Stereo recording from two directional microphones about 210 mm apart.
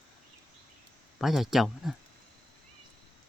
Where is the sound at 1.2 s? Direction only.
Centre (ahead or behind).